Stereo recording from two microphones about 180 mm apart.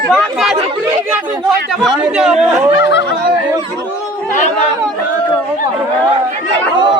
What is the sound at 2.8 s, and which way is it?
Speech, 80° left.